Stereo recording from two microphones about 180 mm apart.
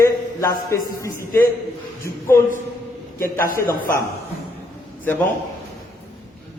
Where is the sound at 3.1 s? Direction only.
15° left (ahead or behind).